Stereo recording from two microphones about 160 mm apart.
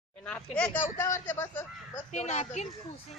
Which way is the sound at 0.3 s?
5° left (ahead or behind).